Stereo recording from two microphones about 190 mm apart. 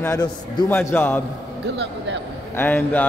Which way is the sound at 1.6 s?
65° right (ahead or behind).